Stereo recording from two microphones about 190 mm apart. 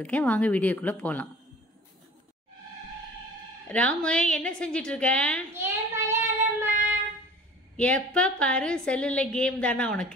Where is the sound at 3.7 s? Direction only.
5° left (ahead or behind).